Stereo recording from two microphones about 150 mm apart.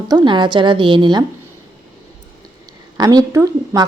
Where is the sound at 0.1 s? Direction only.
30° right (ahead or behind).